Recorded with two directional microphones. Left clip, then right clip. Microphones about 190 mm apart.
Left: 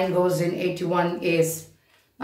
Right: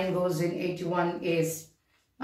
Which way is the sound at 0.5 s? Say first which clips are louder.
Left 5 dB; 40° left (ahead or behind).